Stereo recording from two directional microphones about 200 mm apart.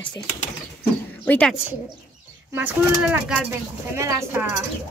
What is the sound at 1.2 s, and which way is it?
Speech, 10° left (ahead or behind).